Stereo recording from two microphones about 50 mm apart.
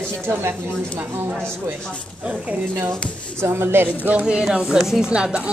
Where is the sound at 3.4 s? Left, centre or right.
Right.